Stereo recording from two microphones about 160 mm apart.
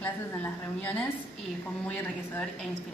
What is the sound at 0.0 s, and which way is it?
Speech, 10° left (ahead or behind).